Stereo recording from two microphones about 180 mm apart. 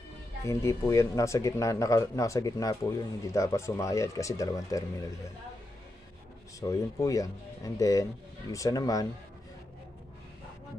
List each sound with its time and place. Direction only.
0.5 s speech: 15° left (ahead or behind)
6.6 s speech: 20° left (ahead or behind)